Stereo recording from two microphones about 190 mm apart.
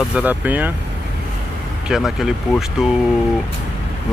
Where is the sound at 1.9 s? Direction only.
Centre (ahead or behind).